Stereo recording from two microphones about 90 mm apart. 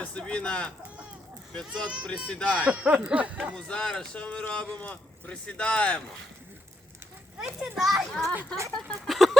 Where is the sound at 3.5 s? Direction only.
10° left (ahead or behind).